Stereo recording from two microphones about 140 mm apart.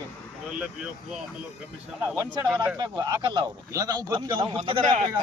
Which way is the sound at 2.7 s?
25° right (ahead or behind).